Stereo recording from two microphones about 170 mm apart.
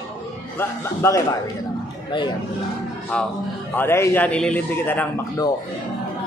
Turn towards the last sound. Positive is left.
turn(degrees=15)  # may be behind; listen again after turning